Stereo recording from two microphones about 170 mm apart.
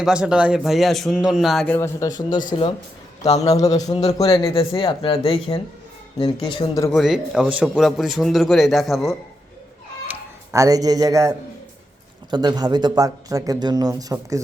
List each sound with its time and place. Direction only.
0.0 s a man's voice: 5° right (ahead or behind); by 2.4 s 20° left (ahead or behind)
3.4 s a man's voice: 20° left (ahead or behind)
6.9 s a man's voice: centre (ahead or behind)
10.5 s speech: 20° right (ahead or behind)